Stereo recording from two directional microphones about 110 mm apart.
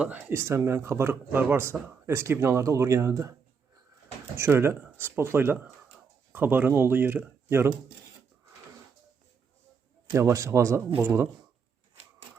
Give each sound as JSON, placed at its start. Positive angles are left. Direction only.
{"t": 0.0, "sound": "speech", "side_deg": -15}
{"t": 0.3, "sound": "speech", "side_deg": -25}
{"t": 4.4, "sound": "speech", "side_deg": -25}
{"t": 10.1, "sound": "speech", "side_deg": -25}